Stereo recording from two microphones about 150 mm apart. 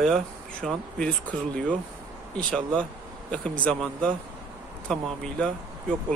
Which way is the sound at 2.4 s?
5° left (ahead or behind).